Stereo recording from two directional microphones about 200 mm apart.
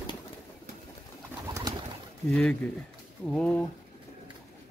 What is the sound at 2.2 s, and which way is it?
Speech, 5° left (ahead or behind).